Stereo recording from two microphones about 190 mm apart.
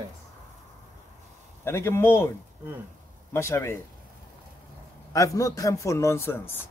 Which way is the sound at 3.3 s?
15° left (ahead or behind).